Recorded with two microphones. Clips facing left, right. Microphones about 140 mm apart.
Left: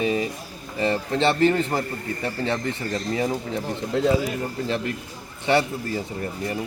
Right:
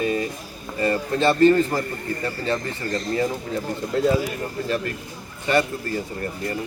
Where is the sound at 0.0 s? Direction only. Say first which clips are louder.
Even; 15° left (ahead or behind).